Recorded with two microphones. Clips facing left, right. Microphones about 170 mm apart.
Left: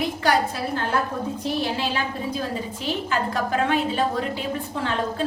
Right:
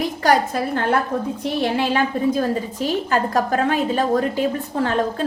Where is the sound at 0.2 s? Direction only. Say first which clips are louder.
Right 6 dB; 45° right (ahead or behind).